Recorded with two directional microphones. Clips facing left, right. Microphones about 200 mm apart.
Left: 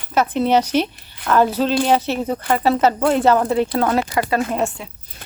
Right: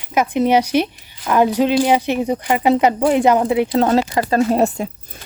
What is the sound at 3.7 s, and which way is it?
Speech, 25° right (ahead or behind).